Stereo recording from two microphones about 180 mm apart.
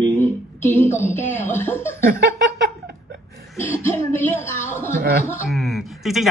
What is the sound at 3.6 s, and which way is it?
Speech, 15° left (ahead or behind).